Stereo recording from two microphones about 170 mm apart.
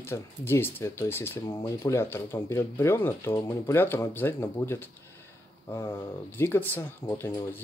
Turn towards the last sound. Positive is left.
turn(degrees=15)  # may be behind; listen again after turning